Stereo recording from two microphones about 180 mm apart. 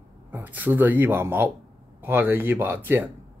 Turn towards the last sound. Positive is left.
turn(degrees=-10)  # may be behind; listen again after turning